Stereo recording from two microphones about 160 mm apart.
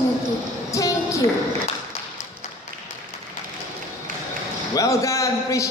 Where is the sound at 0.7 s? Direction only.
20° left (ahead or behind).